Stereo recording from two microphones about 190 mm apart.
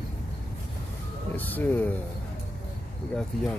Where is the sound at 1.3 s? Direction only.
10° left (ahead or behind).